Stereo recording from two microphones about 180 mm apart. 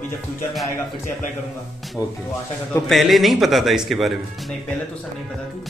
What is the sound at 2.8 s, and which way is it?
Speech, centre (ahead or behind).